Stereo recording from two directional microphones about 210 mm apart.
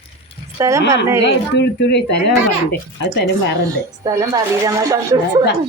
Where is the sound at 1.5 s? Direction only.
55° left (ahead or behind).